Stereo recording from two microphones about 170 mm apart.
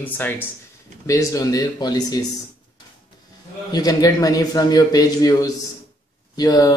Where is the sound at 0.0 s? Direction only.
10° left (ahead or behind).